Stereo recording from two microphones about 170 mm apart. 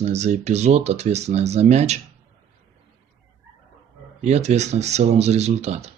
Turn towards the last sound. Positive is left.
turn(degrees=-40)  # may be behind; listen again after turning